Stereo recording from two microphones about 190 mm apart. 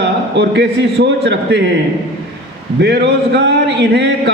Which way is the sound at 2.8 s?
65° right (ahead or behind).